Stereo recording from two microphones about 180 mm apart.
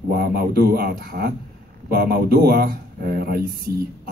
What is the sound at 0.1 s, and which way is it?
Speech, 60° right (ahead or behind).